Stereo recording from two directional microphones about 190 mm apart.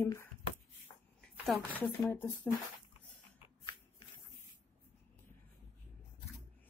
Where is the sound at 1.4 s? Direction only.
5° left (ahead or behind).